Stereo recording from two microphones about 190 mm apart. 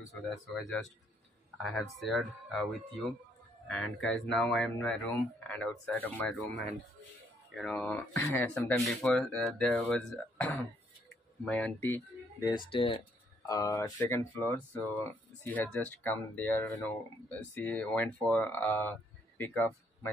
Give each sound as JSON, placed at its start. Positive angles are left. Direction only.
{"t": 0.1, "sound": "speech", "side_deg": 0}
{"t": 7.5, "sound": "speech", "side_deg": 5}
{"t": 13.5, "sound": "speech", "side_deg": 15}
{"t": 15.4, "sound": "speech", "side_deg": 10}